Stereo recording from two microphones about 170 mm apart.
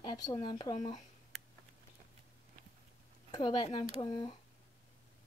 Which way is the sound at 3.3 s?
25° left (ahead or behind).